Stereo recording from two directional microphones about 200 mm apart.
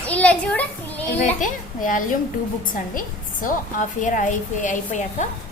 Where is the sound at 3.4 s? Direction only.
40° left (ahead or behind).